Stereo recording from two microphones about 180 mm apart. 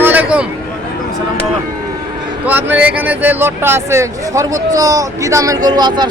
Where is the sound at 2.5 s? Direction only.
10° right (ahead or behind).